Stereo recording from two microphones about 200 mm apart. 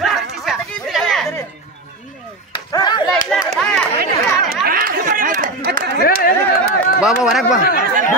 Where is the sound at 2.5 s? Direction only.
20° left (ahead or behind).